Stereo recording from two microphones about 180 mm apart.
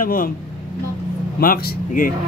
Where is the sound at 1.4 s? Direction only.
55° left (ahead or behind).